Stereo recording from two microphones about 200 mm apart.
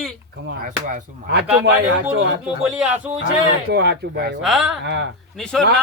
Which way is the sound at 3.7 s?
60° right (ahead or behind).